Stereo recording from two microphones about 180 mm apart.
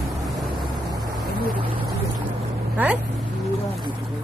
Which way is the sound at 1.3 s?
55° right (ahead or behind).